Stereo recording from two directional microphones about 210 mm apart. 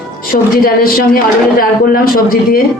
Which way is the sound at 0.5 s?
45° left (ahead or behind).